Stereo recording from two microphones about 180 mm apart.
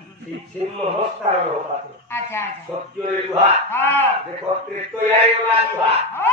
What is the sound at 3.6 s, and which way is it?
Battle cry, 10° left (ahead or behind).